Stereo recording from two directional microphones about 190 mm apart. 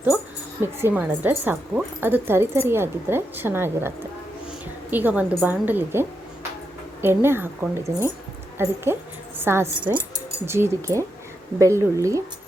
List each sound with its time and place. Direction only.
0.6 s a woman's voice: 10° right (ahead or behind)